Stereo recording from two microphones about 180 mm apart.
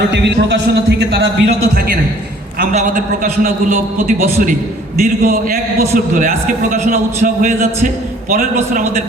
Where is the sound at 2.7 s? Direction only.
45° right (ahead or behind).